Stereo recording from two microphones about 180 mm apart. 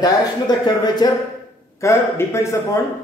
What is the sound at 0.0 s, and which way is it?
Speech, 25° left (ahead or behind).